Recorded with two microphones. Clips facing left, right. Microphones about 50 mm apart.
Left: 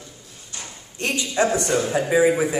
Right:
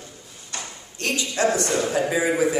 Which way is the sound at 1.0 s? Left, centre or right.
Left.